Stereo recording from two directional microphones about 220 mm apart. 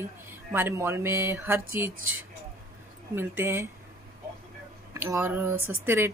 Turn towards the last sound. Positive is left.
turn(degrees=-10)  # may be behind; listen again after turning